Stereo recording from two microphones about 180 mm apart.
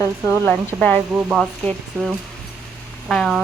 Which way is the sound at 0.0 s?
15° left (ahead or behind).